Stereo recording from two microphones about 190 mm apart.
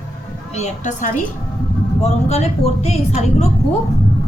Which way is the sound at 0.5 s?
35° left (ahead or behind).